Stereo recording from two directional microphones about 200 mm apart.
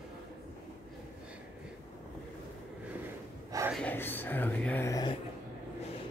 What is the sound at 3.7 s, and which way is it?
Speech, 10° left (ahead or behind).